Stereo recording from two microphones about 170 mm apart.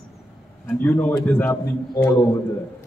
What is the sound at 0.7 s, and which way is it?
A man's voice, 10° left (ahead or behind).